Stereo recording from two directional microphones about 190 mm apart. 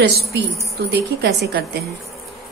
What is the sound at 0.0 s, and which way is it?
Speech, 60° right (ahead or behind).